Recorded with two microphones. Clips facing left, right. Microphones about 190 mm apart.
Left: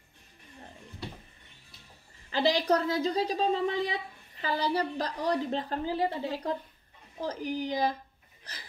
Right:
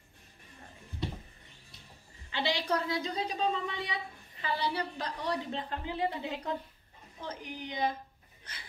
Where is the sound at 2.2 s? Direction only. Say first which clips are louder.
Left 6 dB; 40° left (ahead or behind).